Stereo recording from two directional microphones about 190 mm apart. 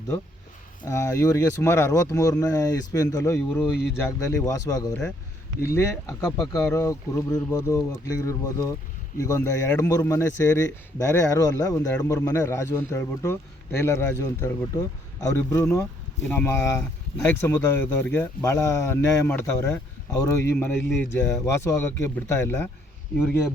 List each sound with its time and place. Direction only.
0.9 s a man's voice: 15° left (ahead or behind)